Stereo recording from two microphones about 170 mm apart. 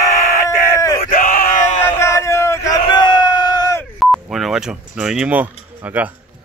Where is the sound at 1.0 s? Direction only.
55° left (ahead or behind).